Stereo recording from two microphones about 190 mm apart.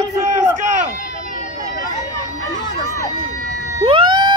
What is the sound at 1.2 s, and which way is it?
Vehicle, 40° left (ahead or behind).